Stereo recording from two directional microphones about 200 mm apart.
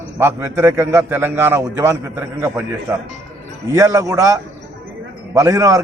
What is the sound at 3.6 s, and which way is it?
A man's voice, 15° right (ahead or behind).